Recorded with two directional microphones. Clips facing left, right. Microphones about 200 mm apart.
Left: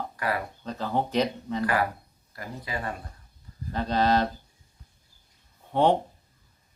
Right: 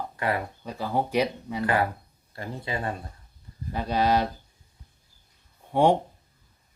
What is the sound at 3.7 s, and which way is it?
Speech, 10° right (ahead or behind).